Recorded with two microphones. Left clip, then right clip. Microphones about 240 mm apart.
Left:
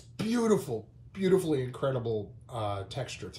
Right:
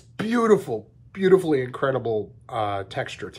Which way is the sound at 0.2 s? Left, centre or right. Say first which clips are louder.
Right 8 dB; right.